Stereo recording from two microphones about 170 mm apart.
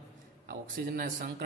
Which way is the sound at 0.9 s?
60° right (ahead or behind).